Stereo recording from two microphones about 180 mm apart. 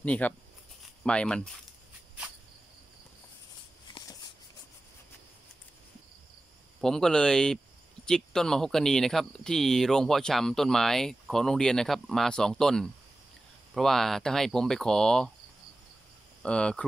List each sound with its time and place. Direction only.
0.0 s speech: 10° left (ahead or behind)
6.8 s speech: 5° left (ahead or behind)
16.4 s speech: 5° left (ahead or behind)